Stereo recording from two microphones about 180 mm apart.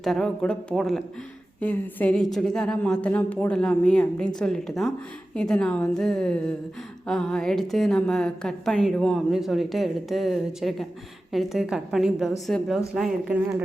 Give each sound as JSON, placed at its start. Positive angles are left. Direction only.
{"t": 0.0, "sound": "a woman's voice", "side_deg": 0}